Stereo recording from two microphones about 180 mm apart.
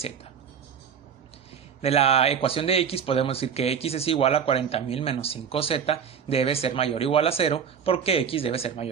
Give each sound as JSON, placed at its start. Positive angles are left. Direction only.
{"t": 1.8, "sound": "speech", "side_deg": 35}